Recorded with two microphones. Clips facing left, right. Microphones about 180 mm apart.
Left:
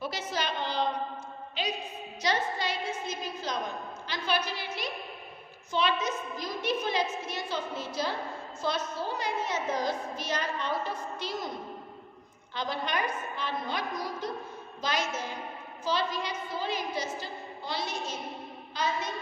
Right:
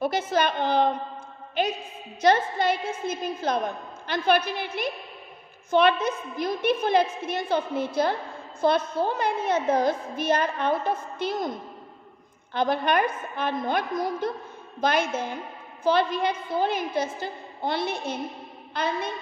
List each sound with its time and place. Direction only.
0.0 s a woman's voice: 55° right (ahead or behind)
12.5 s a woman's voice: 55° right (ahead or behind)